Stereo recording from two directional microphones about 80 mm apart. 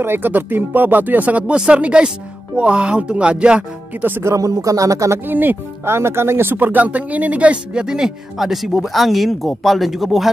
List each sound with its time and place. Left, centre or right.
0.0 s speech: right
4.0 s speech: right
4.3 s speech: right
5.2 s speech: right; by 10.3 s centre